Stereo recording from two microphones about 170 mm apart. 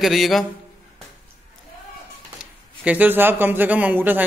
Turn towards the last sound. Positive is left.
turn(degrees=-10)  # may be behind; listen again after turning